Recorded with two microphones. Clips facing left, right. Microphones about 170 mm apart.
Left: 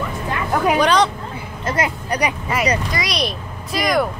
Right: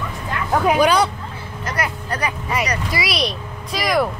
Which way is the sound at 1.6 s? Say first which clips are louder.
Left 4 dB; 25° left (ahead or behind).